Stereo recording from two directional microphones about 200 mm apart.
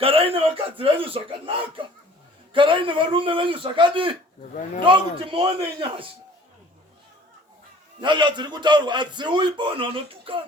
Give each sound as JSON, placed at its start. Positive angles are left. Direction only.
{"t": 0.0, "sound": "a man's voice", "side_deg": -30}
{"t": 8.0, "sound": "a man's voice", "side_deg": -25}